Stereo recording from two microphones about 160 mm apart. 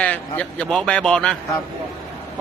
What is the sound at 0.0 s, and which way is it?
A man's voice, 10° left (ahead or behind).